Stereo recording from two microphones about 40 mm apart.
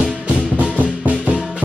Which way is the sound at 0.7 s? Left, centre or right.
Right.